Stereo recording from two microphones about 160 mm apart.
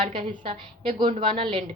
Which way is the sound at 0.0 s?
30° right (ahead or behind).